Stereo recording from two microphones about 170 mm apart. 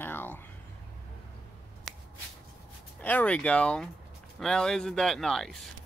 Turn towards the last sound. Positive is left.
turn(degrees=0)  # may be behind; listen again after turning